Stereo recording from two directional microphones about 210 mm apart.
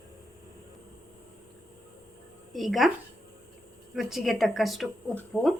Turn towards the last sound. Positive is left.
turn(degrees=0)  # may be behind; listen again after turning